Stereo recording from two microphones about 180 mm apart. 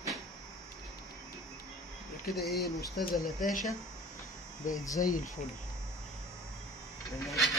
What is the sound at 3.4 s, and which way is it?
Speech, 50° left (ahead or behind).